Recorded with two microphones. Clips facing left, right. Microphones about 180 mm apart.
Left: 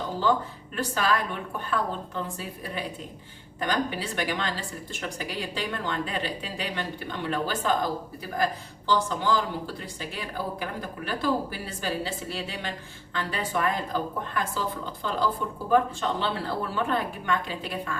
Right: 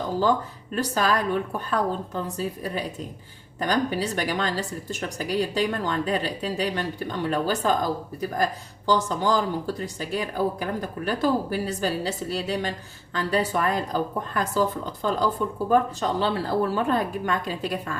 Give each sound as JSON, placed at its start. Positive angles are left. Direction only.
{"t": 0.8, "sound": "speech", "side_deg": -40}
{"t": 8.9, "sound": "a woman's voice", "side_deg": -45}